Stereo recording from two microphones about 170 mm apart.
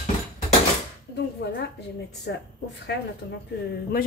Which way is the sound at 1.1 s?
80° left.